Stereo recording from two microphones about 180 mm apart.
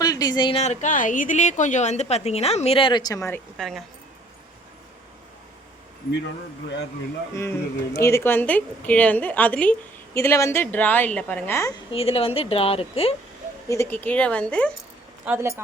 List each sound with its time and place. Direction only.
0.0 s a sound: 20° left (ahead or behind)
0.6 s a woman's voice: 40° left (ahead or behind); by 3.4 s 15° left (ahead or behind)
3.6 s speech: centre (ahead or behind)
7.3 s a woman's voice: 15° left (ahead or behind)
11.9 s a woman's voice: 30° left (ahead or behind)
13.7 s a woman's voice: 15° left (ahead or behind)
15.2 s speech: 10° right (ahead or behind)